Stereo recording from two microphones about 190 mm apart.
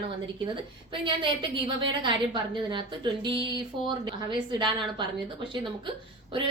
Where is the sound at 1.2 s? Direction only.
25° right (ahead or behind).